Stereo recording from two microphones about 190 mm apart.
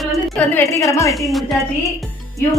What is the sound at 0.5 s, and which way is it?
Speech, 15° left (ahead or behind).